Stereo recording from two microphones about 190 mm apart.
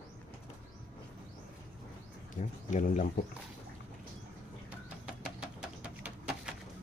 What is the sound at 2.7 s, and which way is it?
Speech, 45° left (ahead or behind).